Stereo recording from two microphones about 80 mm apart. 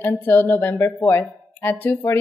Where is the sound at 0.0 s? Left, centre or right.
Left.